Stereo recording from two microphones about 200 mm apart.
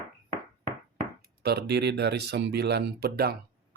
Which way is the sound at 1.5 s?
55° right (ahead or behind).